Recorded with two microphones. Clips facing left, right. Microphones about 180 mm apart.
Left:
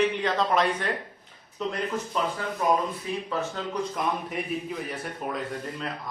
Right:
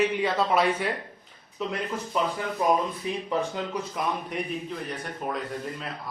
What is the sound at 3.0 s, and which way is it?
Speech, 20° right (ahead or behind).